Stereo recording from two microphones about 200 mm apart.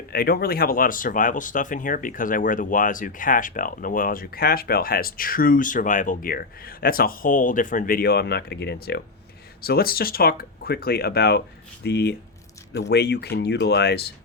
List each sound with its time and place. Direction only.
0.1 s speech: 50° left (ahead or behind)